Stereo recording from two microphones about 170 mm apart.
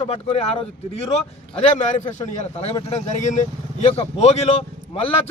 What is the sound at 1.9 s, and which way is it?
A man's voice, 45° left (ahead or behind).